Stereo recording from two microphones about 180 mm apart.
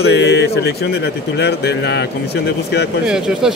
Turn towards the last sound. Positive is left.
turn(degrees=-5)  # may be behind; listen again after turning